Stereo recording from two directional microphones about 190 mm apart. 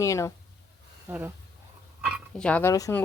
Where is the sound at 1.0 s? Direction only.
10° right (ahead or behind).